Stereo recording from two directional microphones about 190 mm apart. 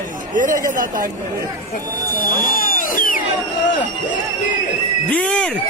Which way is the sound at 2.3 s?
45° left (ahead or behind).